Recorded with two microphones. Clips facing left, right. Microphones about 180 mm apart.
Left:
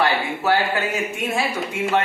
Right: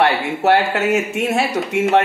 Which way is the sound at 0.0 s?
70° right (ahead or behind).